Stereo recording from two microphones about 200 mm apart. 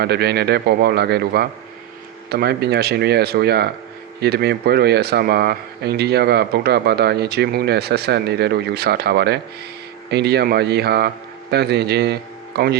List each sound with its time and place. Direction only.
0.0 s speech: 55° right (ahead or behind)